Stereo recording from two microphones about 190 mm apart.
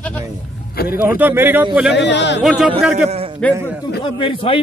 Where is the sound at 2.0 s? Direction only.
70° left (ahead or behind).